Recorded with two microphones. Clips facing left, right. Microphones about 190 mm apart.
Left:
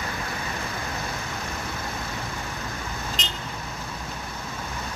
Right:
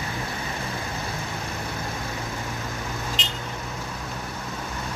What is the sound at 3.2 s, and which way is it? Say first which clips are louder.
Vehicle: right 1 dB; 40° left (ahead or behind).